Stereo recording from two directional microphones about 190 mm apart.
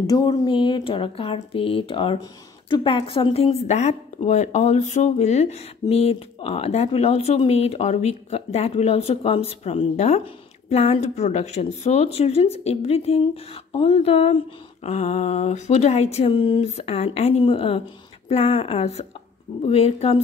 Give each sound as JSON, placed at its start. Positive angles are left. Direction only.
{"t": 0.0, "sound": "speech", "side_deg": 20}